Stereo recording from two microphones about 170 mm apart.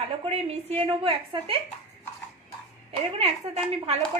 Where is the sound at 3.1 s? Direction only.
40° right (ahead or behind).